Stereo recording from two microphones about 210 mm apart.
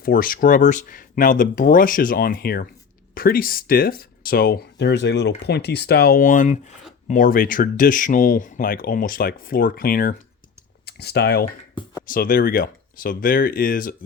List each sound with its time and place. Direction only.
0.0 s speech: 45° left (ahead or behind)
11.7 s a sound: 20° left (ahead or behind)
12.0 s speech: 40° left (ahead or behind)